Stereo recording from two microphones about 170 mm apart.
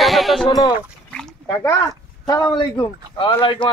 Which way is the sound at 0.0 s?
Centre (ahead or behind).